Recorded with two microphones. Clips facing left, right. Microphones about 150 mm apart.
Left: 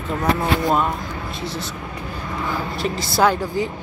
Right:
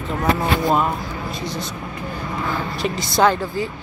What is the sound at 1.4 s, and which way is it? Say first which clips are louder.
Speech: left 1 dB; 30° left (ahead or behind).